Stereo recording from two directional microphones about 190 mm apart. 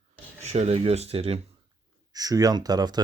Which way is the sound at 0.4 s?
35° right (ahead or behind).